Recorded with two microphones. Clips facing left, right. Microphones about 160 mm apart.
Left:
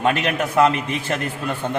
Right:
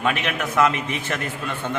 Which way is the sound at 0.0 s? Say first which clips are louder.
Left 4 dB; 35° left (ahead or behind).